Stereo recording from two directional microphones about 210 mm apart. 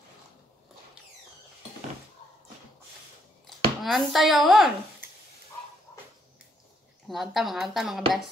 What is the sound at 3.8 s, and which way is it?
Speech, centre (ahead or behind).